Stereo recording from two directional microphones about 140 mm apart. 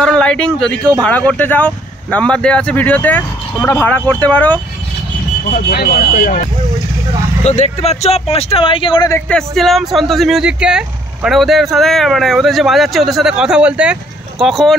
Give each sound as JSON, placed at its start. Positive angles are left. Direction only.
{"t": 0.0, "sound": "speech", "side_deg": 5}
{"t": 5.9, "sound": "speech", "side_deg": 70}
{"t": 7.4, "sound": "speech", "side_deg": 55}
{"t": 9.3, "sound": "speech", "side_deg": 0}